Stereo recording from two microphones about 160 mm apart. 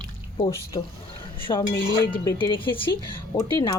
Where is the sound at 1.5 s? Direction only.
25° left (ahead or behind).